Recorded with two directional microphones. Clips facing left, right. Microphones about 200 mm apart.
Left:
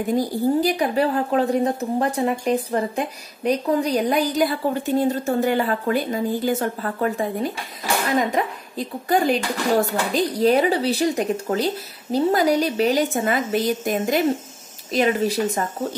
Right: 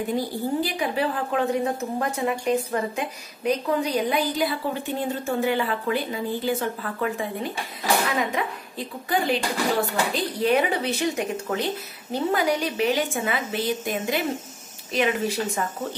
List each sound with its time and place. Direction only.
0.6 s a woman's voice: 40° left (ahead or behind)